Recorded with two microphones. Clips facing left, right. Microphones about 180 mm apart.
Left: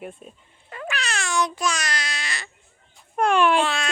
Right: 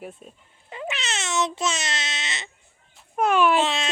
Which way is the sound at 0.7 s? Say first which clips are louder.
Left 1 dB; 20° right (ahead or behind).